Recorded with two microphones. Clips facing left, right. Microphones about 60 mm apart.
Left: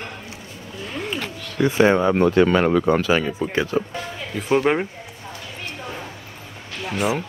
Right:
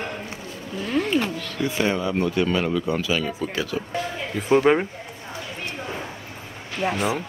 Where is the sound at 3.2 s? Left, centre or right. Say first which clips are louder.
Left 4 dB; left.